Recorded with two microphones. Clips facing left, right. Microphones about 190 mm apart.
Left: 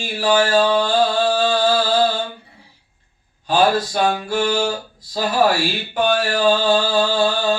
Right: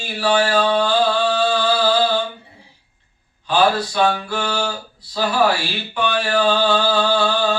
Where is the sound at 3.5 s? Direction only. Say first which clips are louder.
Left 1 dB; 45° left (ahead or behind).